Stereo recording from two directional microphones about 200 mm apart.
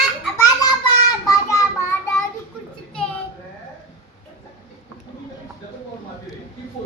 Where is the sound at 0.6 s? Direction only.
20° left (ahead or behind).